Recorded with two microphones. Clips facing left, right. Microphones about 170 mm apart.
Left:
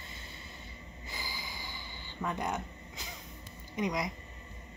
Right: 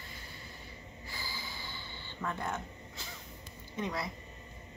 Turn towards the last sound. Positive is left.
turn(degrees=15)  # may be behind; listen again after turning